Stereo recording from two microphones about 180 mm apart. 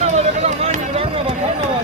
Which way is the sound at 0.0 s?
35° right (ahead or behind).